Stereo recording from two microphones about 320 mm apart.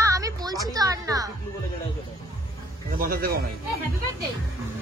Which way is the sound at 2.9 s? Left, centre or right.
Right.